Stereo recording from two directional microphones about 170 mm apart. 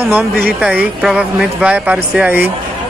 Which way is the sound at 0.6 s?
5° right (ahead or behind).